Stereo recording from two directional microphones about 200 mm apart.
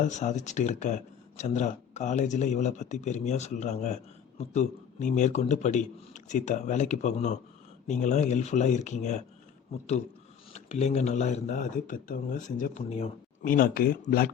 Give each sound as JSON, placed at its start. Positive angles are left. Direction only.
{"t": 0.0, "sound": "speech", "side_deg": 35}
{"t": 10.5, "sound": "speech", "side_deg": 35}
{"t": 13.4, "sound": "speech", "side_deg": 45}